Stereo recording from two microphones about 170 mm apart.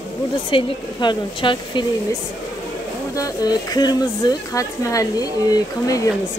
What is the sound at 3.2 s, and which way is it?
Speech, 20° left (ahead or behind).